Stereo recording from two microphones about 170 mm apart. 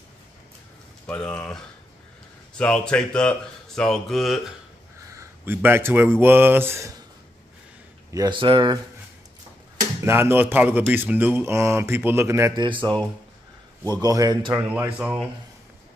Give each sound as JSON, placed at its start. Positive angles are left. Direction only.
{"t": 1.0, "sound": "speech", "side_deg": 5}
{"t": 5.1, "sound": "speech", "side_deg": -10}
{"t": 8.1, "sound": "speech", "side_deg": -25}
{"t": 10.0, "sound": "speech", "side_deg": -15}
{"t": 13.9, "sound": "speech", "side_deg": -20}
{"t": 14.5, "sound": "speech", "side_deg": -10}